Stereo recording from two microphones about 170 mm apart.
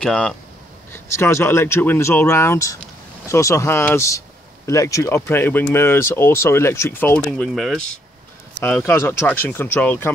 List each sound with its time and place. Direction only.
0.0 s speech: 5° left (ahead or behind)
0.9 s speech: 15° left (ahead or behind)
8.5 s speech: 10° left (ahead or behind)